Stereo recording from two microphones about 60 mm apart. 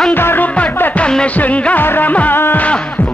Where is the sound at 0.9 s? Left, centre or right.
Centre.